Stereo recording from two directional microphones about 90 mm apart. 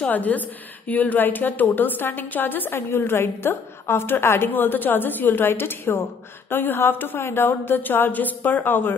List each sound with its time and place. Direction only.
0.1 s a woman's voice: 20° left (ahead or behind)